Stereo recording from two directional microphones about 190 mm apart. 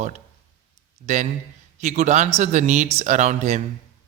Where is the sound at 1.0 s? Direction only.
40° right (ahead or behind).